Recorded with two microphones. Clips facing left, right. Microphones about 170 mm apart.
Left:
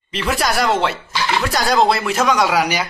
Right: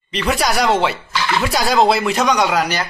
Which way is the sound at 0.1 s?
Centre (ahead or behind).